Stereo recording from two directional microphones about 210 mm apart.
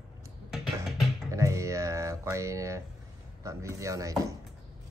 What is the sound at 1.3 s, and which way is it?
Speech, 15° right (ahead or behind).